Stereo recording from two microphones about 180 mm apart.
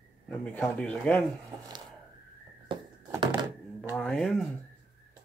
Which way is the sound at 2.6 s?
20° right (ahead or behind).